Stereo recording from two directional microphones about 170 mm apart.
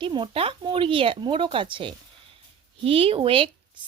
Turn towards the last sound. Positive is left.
turn(degrees=-30)  # may be behind; listen again after turning